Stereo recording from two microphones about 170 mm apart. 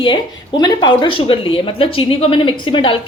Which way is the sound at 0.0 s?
25° left (ahead or behind).